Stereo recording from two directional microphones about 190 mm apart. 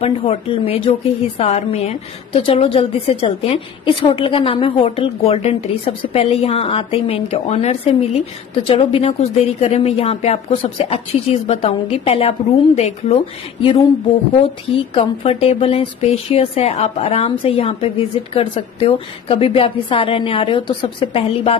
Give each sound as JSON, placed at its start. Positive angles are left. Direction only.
{"t": 0.0, "sound": "speech", "side_deg": 30}